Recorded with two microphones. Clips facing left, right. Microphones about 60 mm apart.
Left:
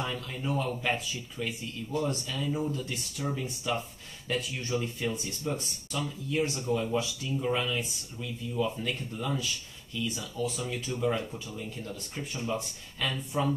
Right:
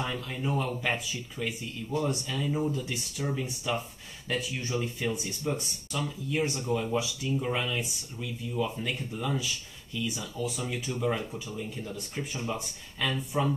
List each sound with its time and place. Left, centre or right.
0.0 s speech: centre
5.5 s speech: centre
5.9 s speech: centre
10.4 s speech: centre